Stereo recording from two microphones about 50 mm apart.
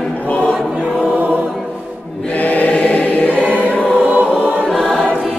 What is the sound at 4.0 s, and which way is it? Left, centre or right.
Choir, right.